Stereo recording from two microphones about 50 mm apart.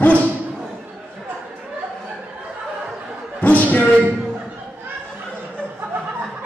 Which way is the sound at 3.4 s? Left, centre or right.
Left.